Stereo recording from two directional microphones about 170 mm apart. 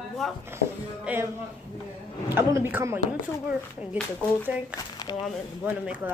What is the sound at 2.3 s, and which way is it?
Speech, 15° right (ahead or behind).